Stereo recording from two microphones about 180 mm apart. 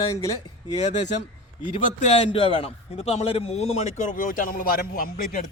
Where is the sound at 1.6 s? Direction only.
35° left (ahead or behind).